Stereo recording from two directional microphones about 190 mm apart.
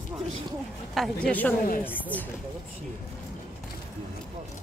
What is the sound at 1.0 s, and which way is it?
A woman's voice, 5° left (ahead or behind).